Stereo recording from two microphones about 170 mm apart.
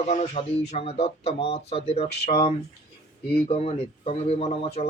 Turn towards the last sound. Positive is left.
turn(degrees=35)  # may be behind; listen again after turning